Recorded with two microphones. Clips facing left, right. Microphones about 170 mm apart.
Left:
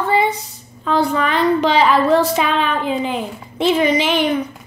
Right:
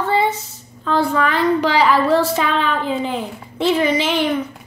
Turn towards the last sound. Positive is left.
turn(degrees=15)  # may be behind; listen again after turning